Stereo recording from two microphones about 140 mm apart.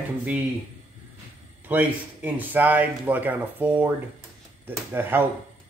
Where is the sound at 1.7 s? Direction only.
10° right (ahead or behind).